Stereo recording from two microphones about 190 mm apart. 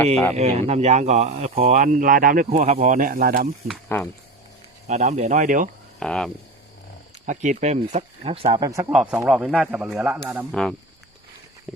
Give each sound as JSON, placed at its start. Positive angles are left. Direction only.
{"t": 0.3, "sound": "speech", "side_deg": -35}
{"t": 3.8, "sound": "speech", "side_deg": 10}
{"t": 4.9, "sound": "speech", "side_deg": -35}
{"t": 6.0, "sound": "speech", "side_deg": 5}
{"t": 7.3, "sound": "speech", "side_deg": -40}
{"t": 8.5, "sound": "speech", "side_deg": -20}
{"t": 8.9, "sound": "speech", "side_deg": -5}
{"t": 10.5, "sound": "speech", "side_deg": 0}